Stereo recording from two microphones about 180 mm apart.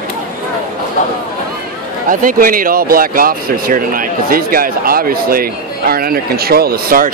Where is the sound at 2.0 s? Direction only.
50° right (ahead or behind).